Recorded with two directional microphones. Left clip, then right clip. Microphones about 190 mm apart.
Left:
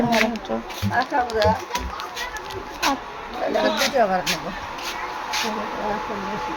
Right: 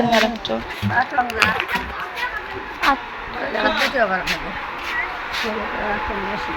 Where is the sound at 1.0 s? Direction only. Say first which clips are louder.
Right 3 dB; 45° left (ahead or behind).